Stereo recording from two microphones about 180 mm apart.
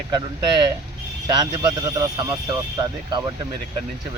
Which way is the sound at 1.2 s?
20° right (ahead or behind).